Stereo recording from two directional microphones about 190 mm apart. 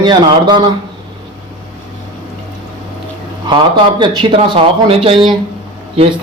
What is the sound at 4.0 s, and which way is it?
A man's voice, 25° right (ahead or behind).